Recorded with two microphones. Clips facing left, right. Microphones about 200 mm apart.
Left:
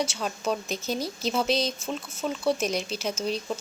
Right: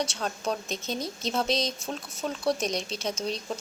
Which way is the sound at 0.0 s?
5° left (ahead or behind).